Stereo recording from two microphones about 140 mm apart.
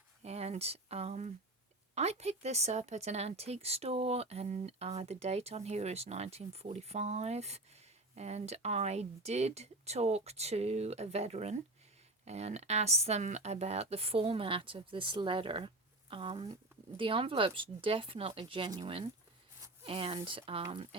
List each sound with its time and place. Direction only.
0.2 s speech: 50° right (ahead or behind)